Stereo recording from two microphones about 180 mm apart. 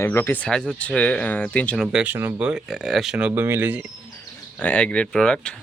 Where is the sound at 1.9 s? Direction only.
10° right (ahead or behind).